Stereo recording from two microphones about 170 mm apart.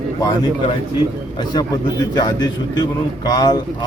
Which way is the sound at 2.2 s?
25° left (ahead or behind).